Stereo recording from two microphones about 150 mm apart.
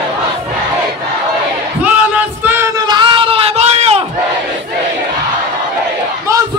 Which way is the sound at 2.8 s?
30° right (ahead or behind).